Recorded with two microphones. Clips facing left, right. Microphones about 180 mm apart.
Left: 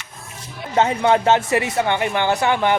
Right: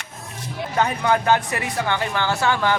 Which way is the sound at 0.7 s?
25° left (ahead or behind).